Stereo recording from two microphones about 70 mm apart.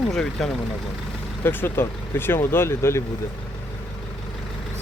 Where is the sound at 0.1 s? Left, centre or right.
Centre.